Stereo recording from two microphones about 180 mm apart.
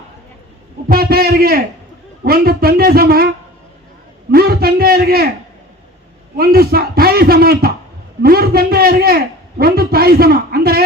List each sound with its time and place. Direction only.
0.9 s a man's voice: 55° right (ahead or behind)
4.3 s a man's voice: 55° right (ahead or behind)
6.3 s a man's voice: 55° right (ahead or behind)